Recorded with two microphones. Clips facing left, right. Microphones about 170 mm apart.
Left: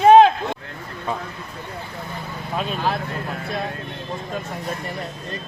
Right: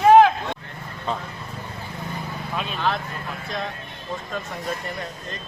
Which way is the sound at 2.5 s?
40° left (ahead or behind).